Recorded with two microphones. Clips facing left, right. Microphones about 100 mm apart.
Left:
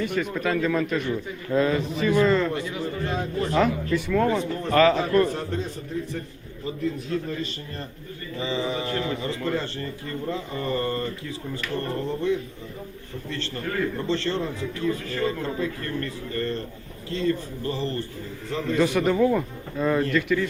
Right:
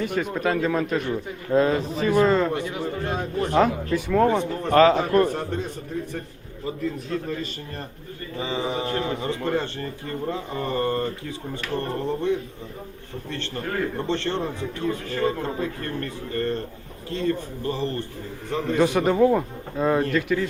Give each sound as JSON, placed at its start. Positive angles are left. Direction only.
{"t": 0.0, "sound": "speech", "side_deg": -35}
{"t": 2.2, "sound": "a man's voice", "side_deg": -20}
{"t": 2.5, "sound": "a man's voice", "side_deg": -55}
{"t": 3.5, "sound": "speech", "side_deg": -30}
{"t": 4.9, "sound": "a man's voice", "side_deg": -50}
{"t": 8.4, "sound": "a man's voice", "side_deg": -20}
{"t": 13.6, "sound": "a man's voice", "side_deg": -30}
{"t": 17.7, "sound": "a man's voice", "side_deg": -20}